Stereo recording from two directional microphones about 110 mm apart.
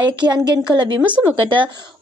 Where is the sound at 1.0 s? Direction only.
15° right (ahead or behind).